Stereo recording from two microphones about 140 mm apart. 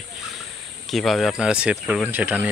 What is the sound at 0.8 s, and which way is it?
Speech, centre (ahead or behind).